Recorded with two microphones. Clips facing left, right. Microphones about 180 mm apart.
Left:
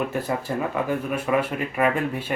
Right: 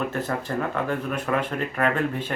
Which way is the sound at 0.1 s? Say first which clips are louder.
Left 1 dB; 10° left (ahead or behind).